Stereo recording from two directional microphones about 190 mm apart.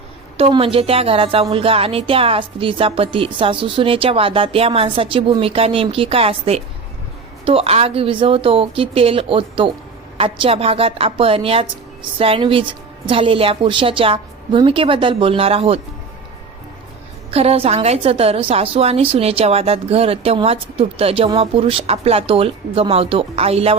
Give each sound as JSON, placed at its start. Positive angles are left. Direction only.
{"t": 0.3, "sound": "speech", "side_deg": -30}
{"t": 17.3, "sound": "a woman's voice", "side_deg": -30}